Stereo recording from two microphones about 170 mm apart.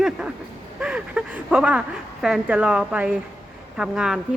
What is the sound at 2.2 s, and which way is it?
Speech, 5° right (ahead or behind).